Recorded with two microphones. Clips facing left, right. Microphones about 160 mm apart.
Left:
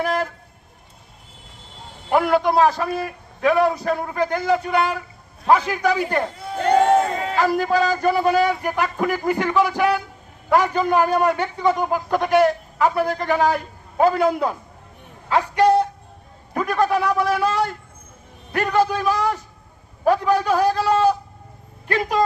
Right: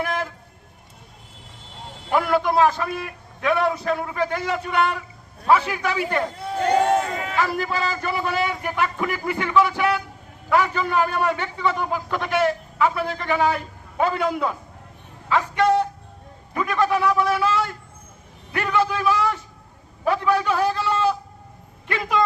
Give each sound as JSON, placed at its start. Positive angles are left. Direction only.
{"t": 2.0, "sound": "a man's voice", "side_deg": 35}